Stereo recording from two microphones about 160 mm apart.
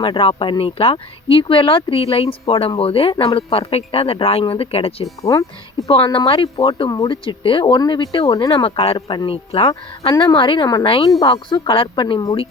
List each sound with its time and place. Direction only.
0.0 s speech: 35° left (ahead or behind)
5.2 s speech: 20° left (ahead or behind)
5.9 s speech: 35° left (ahead or behind)